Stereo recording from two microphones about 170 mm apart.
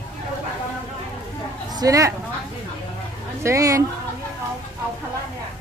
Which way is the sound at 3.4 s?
20° right (ahead or behind).